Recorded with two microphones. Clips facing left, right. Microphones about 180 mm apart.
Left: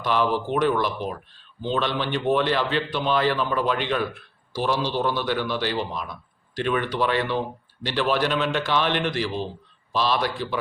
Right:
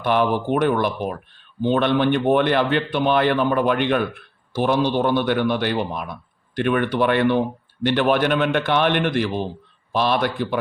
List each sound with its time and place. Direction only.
0.0 s a man's voice: 55° right (ahead or behind)